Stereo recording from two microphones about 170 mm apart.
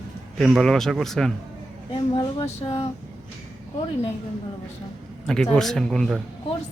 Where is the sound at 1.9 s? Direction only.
35° left (ahead or behind).